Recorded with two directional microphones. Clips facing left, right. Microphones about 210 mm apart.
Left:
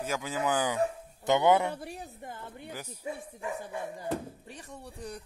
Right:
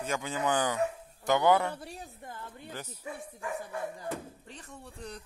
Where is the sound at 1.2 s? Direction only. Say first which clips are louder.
Left 1 dB; 20° left (ahead or behind).